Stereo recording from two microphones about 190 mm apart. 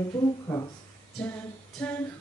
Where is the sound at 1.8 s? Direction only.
10° left (ahead or behind).